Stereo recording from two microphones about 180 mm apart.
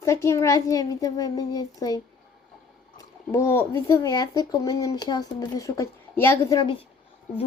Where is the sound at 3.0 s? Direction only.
15° left (ahead or behind).